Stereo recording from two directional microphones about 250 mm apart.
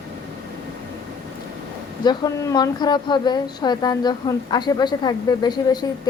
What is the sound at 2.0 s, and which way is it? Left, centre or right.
A woman's voice, centre.